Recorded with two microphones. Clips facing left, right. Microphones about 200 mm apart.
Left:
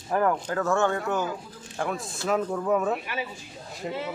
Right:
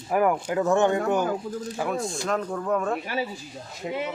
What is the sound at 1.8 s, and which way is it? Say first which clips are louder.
Speech: right 1 dB; centre (ahead or behind).